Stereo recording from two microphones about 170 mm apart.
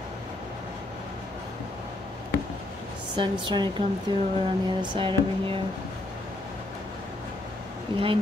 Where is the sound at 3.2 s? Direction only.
30° right (ahead or behind).